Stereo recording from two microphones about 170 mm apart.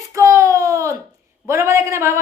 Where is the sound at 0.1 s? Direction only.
15° right (ahead or behind).